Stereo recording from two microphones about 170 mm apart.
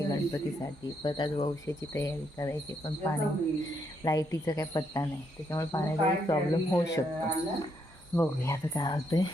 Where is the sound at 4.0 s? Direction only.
20° left (ahead or behind).